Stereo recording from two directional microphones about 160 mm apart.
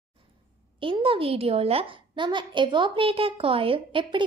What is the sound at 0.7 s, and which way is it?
A woman's voice, 30° right (ahead or behind).